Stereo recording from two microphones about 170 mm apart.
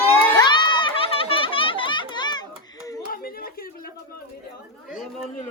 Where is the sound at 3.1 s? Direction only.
60° left (ahead or behind).